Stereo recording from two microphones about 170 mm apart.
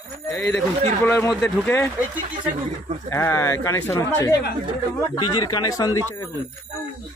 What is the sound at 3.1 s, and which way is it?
Speech, 15° left (ahead or behind).